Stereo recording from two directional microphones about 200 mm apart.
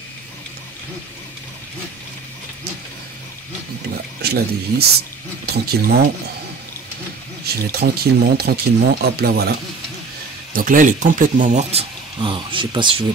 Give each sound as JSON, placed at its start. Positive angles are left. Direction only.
{"t": 4.2, "sound": "speech", "side_deg": -55}
{"t": 7.4, "sound": "speech", "side_deg": -50}
{"t": 10.5, "sound": "speech", "side_deg": -45}
{"t": 12.2, "sound": "speech", "side_deg": -25}